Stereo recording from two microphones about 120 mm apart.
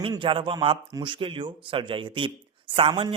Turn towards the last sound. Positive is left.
turn(degrees=-45)  # may be behind; listen again after turning